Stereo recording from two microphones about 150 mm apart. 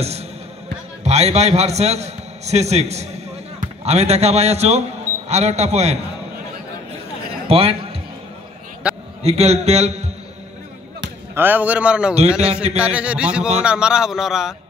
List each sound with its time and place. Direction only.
0.0 s a man's voice: 45° right (ahead or behind)
7.4 s a man's voice: 40° right (ahead or behind)
8.8 s a sound: 5° right (ahead or behind)
9.2 s a man's voice: 45° right (ahead or behind)
11.3 s a man's voice: 10° right (ahead or behind)